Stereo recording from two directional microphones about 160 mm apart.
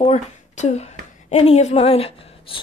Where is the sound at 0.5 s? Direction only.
45° left (ahead or behind).